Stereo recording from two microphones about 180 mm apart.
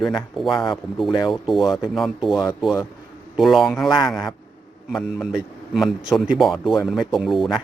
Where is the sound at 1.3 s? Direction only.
Centre (ahead or behind).